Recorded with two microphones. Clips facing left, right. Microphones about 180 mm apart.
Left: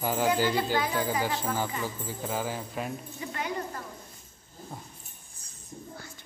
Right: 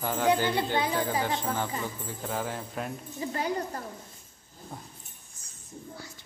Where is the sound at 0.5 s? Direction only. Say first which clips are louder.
Even; 25° right (ahead or behind).